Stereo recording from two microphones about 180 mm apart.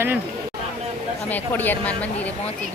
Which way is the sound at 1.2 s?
10° left (ahead or behind).